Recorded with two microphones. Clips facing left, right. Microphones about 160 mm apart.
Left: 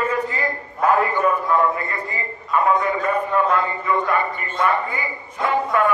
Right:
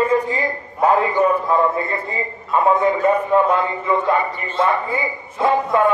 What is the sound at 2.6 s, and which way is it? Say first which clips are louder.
A man's voice: right 6 dB; 25° right (ahead or behind).